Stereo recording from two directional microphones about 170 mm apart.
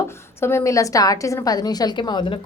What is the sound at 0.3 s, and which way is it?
A woman's voice, 15° left (ahead or behind).